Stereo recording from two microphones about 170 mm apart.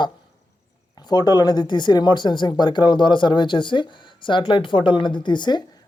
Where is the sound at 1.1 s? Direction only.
25° left (ahead or behind).